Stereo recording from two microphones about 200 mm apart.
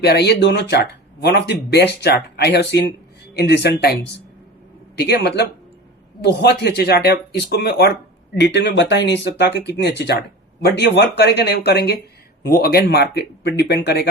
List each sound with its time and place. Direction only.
0.0 s speech: 55° left (ahead or behind)
4.9 s speech: 50° left (ahead or behind)